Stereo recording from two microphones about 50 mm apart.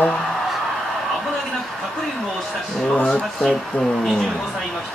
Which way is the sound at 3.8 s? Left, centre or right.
Centre.